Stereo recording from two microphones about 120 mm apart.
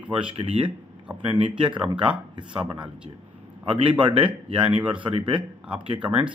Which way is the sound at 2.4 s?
40° right (ahead or behind).